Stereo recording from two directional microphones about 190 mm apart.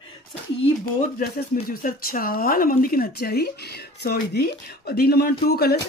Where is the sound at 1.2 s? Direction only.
50° left (ahead or behind).